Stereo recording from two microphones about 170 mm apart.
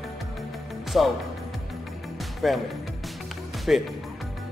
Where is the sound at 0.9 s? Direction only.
Centre (ahead or behind).